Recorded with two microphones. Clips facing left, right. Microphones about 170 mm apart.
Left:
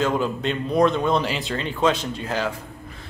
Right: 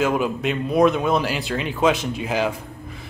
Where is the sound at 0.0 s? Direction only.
10° right (ahead or behind).